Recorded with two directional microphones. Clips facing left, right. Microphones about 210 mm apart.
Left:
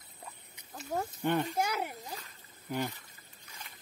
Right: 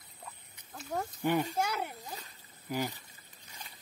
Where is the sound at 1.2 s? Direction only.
15° right (ahead or behind).